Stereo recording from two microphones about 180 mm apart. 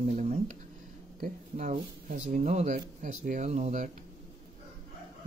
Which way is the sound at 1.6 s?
40° right (ahead or behind).